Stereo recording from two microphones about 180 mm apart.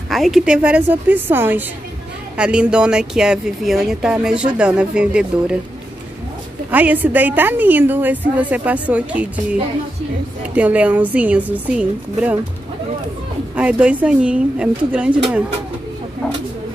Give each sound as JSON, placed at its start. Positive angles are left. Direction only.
{"t": 0.1, "sound": "a woman's voice", "side_deg": 0}
{"t": 6.7, "sound": "a woman's voice", "side_deg": -10}
{"t": 13.6, "sound": "a woman's voice", "side_deg": -5}